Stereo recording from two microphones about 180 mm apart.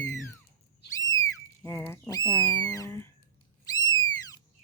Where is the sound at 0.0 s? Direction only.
15° left (ahead or behind).